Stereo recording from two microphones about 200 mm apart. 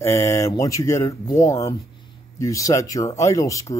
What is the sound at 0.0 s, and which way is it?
Speech, 15° left (ahead or behind).